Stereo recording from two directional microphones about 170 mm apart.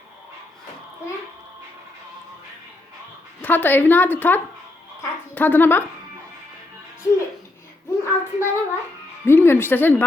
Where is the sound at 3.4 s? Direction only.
10° left (ahead or behind).